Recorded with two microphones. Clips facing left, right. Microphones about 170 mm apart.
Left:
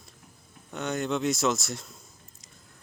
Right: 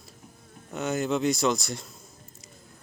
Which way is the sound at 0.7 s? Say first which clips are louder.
Right 2 dB; 5° right (ahead or behind).